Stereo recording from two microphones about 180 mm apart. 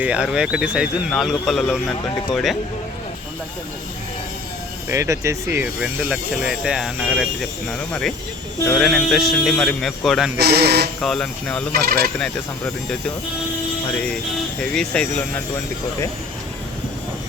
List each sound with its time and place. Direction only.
0.0 s speech: 5° right (ahead or behind)
4.9 s speech: 15° right (ahead or behind); by 10.3 s centre (ahead or behind)
10.3 s speech: 65° right (ahead or behind)
11.0 s speech: 5° left (ahead or behind)
11.7 s speech: 55° right (ahead or behind)
12.2 s speech: 5° left (ahead or behind)
14.6 s speech: 5° left (ahead or behind)